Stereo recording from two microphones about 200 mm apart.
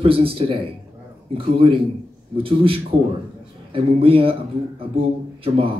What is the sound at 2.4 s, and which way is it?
Speech, 25° right (ahead or behind).